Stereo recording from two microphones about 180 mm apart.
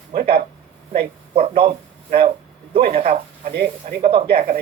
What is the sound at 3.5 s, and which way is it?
Speech, 55° right (ahead or behind).